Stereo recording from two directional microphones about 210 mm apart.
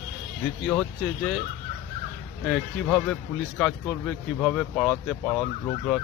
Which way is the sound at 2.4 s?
5° left (ahead or behind).